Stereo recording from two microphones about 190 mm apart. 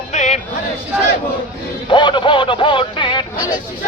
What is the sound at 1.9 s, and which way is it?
Speech, 25° left (ahead or behind).